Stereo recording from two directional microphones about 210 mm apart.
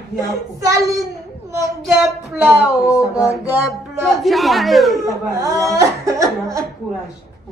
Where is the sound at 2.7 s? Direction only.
15° left (ahead or behind).